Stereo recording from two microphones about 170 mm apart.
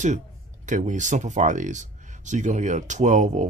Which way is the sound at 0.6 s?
45° right (ahead or behind).